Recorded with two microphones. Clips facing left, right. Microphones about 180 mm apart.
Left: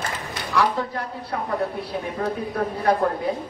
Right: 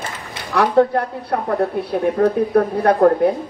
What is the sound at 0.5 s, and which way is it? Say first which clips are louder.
A woman's voice: right 9 dB; 60° right (ahead or behind).